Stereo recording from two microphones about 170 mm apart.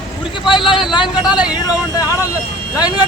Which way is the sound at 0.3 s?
30° left (ahead or behind).